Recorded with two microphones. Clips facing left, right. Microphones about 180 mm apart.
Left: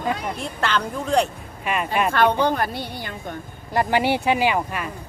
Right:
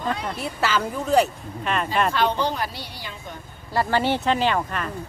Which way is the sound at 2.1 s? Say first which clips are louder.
Left 4 dB; 55° left (ahead or behind).